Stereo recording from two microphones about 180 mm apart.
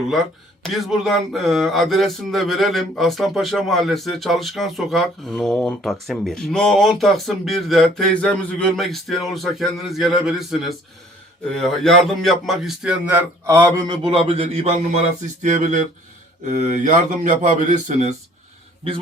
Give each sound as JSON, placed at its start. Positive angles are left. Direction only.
{"t": 0.6, "sound": "speech", "side_deg": 0}
{"t": 15.4, "sound": "a man's voice", "side_deg": -45}